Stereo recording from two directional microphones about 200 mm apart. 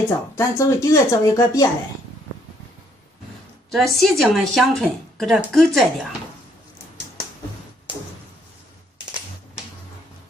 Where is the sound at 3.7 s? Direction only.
Centre (ahead or behind).